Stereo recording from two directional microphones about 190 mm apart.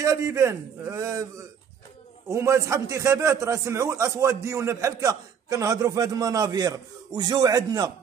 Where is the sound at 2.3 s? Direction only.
15° right (ahead or behind).